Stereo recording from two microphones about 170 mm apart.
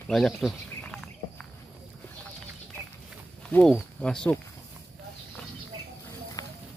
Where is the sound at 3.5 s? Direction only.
5° left (ahead or behind).